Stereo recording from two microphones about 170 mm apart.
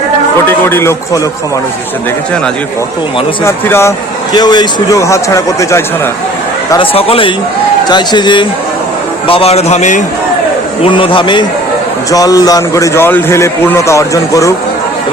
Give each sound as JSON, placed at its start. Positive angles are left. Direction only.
{"t": 0.4, "sound": "a man's voice", "side_deg": 10}
{"t": 3.4, "sound": "a man's voice", "side_deg": 15}
{"t": 6.7, "sound": "a man's voice", "side_deg": 30}
{"t": 10.8, "sound": "a man's voice", "side_deg": 30}